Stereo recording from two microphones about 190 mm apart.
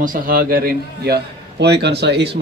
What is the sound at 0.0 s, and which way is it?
A man's voice, 45° right (ahead or behind).